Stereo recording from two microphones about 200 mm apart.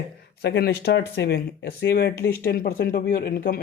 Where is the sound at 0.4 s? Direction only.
55° left (ahead or behind).